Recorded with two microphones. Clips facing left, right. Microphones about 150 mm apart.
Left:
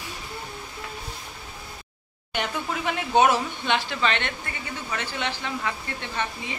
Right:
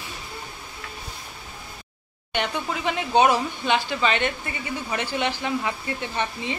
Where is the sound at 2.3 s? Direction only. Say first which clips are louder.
Right 2 dB; centre (ahead or behind); by 5.7 s 15° right (ahead or behind).